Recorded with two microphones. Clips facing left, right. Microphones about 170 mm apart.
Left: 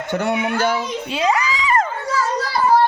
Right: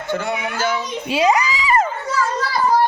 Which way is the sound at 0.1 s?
65° left (ahead or behind).